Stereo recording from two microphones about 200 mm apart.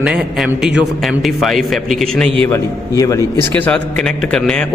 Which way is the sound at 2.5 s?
15° left (ahead or behind).